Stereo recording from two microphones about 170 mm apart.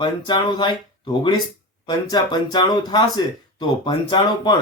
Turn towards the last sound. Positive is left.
turn(degrees=25)  # may be behind; listen again after turning